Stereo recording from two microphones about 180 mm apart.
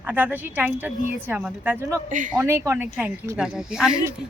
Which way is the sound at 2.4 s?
15° right (ahead or behind).